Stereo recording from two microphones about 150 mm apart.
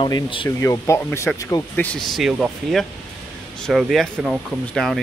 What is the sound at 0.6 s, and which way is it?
Speech, 20° left (ahead or behind).